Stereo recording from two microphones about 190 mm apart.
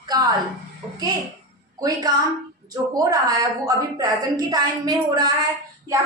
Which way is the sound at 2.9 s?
20° right (ahead or behind).